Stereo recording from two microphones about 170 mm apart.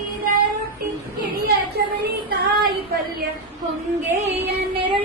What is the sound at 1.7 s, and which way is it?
Child singing, 65° right (ahead or behind).